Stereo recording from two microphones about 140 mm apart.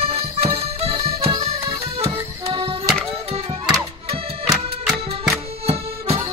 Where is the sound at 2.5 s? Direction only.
40° right (ahead or behind).